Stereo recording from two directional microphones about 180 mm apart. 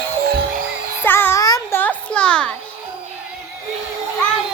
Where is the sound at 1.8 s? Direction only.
5° left (ahead or behind).